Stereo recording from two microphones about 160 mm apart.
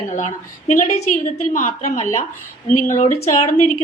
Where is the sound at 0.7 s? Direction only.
50° left (ahead or behind).